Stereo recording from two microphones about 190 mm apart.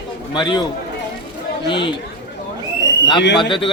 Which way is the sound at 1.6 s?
25° left (ahead or behind).